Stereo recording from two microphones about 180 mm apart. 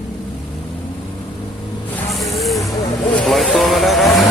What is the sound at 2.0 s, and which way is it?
Snake, centre (ahead or behind).